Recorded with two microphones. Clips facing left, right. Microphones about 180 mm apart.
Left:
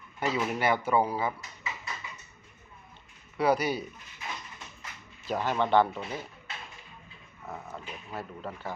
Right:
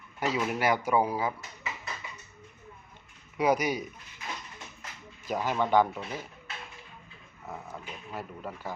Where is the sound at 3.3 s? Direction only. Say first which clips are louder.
Even; 15° right (ahead or behind).